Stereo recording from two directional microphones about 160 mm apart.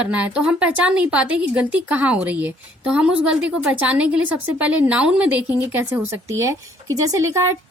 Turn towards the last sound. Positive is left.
turn(degrees=-15)  # may be behind; listen again after turning